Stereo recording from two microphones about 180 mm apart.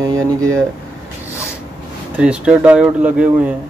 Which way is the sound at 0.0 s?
20° right (ahead or behind).